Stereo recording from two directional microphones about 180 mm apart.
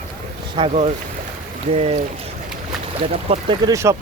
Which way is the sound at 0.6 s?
35° right (ahead or behind).